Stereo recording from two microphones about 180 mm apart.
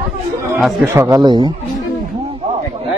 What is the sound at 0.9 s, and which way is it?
Speech, 20° right (ahead or behind).